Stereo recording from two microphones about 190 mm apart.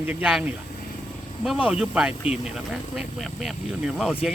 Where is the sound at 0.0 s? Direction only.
10° right (ahead or behind).